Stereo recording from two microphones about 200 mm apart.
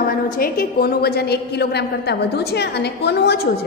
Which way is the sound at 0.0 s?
45° left (ahead or behind).